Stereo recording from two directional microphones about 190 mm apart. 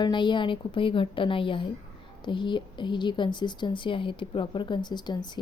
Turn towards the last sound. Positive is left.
turn(degrees=25)  # may be behind; listen again after turning